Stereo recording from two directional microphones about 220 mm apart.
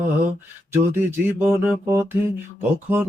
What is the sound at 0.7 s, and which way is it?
Music, 10° right (ahead or behind).